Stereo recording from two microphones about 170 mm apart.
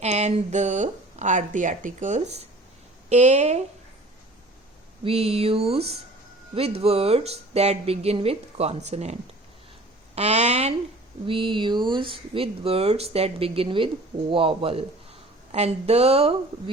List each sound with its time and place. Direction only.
0.0 s speech: 40° right (ahead or behind)
5.0 s speech: 35° right (ahead or behind)
10.2 s speech: 40° right (ahead or behind)